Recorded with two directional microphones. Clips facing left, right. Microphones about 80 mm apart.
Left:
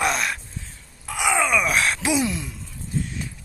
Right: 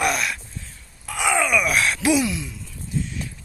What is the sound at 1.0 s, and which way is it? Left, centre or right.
Groan, centre.